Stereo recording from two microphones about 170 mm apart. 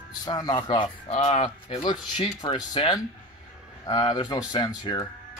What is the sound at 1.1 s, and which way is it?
Speech, 40° left (ahead or behind).